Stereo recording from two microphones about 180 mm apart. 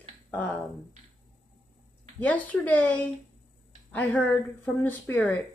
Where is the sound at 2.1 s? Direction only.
10° left (ahead or behind).